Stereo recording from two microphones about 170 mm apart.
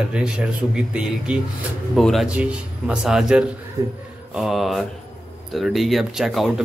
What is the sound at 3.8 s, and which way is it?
Speech, 15° right (ahead or behind).